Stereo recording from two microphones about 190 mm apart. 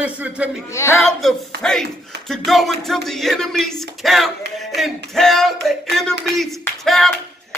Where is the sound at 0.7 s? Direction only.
15° left (ahead or behind).